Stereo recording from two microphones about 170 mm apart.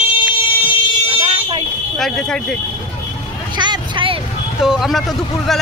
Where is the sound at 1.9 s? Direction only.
Centre (ahead or behind).